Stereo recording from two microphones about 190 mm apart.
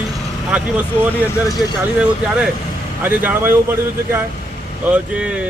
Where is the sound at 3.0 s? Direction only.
10° right (ahead or behind).